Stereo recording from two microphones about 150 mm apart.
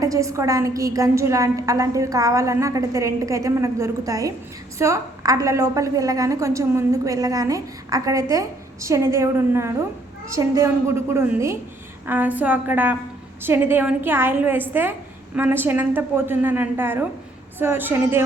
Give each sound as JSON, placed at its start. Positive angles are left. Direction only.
{"t": 0.0, "sound": "a woman's voice", "side_deg": -20}